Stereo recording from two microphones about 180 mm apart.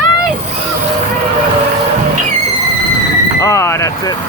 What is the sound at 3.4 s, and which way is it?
Speech, 15° left (ahead or behind).